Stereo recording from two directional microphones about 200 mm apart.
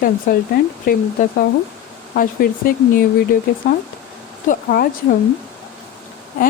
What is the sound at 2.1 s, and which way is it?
Speech, 45° left (ahead or behind).